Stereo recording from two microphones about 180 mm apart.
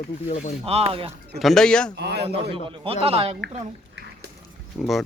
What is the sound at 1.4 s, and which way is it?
Speech, centre (ahead or behind).